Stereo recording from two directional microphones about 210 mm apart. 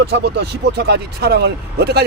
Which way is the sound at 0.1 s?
50° right (ahead or behind).